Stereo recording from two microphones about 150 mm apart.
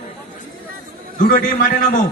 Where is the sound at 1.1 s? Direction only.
65° left (ahead or behind).